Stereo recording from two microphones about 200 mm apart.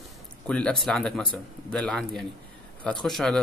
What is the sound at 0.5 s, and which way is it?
A man's voice, 5° left (ahead or behind).